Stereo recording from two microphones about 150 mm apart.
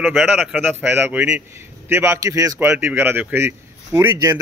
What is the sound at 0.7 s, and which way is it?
Speech, 10° right (ahead or behind).